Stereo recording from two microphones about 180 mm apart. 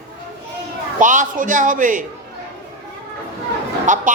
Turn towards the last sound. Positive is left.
turn(degrees=-45)  # may be behind; listen again after turning